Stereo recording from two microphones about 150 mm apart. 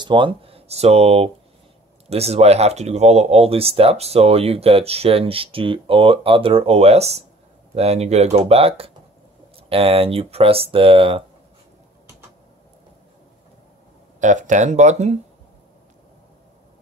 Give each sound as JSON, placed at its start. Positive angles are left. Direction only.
{"t": 0.0, "sound": "speech", "side_deg": -30}
{"t": 14.2, "sound": "speech", "side_deg": -55}